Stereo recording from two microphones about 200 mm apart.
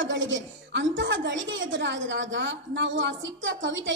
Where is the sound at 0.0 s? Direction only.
70° right (ahead or behind).